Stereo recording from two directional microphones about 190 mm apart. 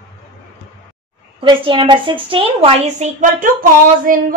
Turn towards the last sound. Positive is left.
turn(degrees=-45)  # may be behind; listen again after turning